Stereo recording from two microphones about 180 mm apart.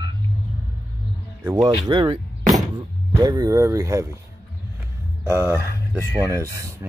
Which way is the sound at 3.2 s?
20° right (ahead or behind).